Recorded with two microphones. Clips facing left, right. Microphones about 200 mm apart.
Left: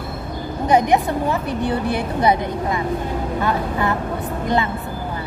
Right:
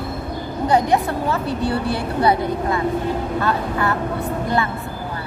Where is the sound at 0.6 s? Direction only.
20° left (ahead or behind).